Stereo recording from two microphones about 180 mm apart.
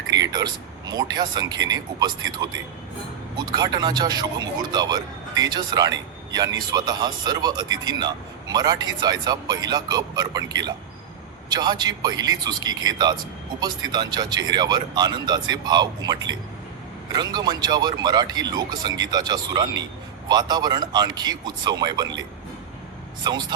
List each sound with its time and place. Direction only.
0.1 s speech: 20° right (ahead or behind)